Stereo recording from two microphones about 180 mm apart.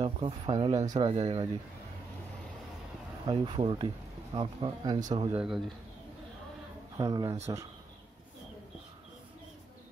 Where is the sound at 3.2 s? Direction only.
25° right (ahead or behind).